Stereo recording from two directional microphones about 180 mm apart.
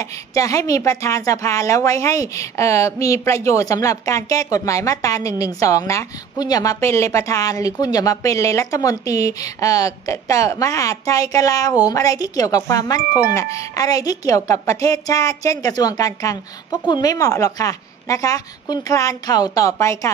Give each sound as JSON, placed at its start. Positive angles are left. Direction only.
{"t": 0.0, "sound": "a woman's voice", "side_deg": 20}